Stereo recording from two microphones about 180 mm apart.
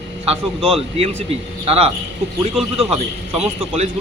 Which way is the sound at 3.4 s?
40° right (ahead or behind).